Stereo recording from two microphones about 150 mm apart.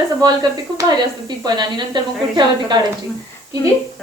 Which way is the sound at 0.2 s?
25° right (ahead or behind).